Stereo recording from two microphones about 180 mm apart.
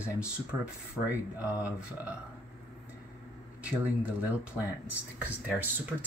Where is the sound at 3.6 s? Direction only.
5° right (ahead or behind).